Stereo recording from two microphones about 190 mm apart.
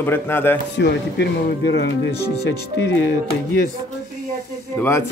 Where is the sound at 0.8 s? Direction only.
65° left (ahead or behind).